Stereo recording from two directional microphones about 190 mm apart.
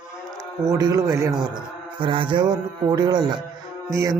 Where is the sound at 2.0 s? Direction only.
25° right (ahead or behind).